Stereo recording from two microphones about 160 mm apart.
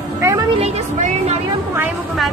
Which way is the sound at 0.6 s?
40° right (ahead or behind).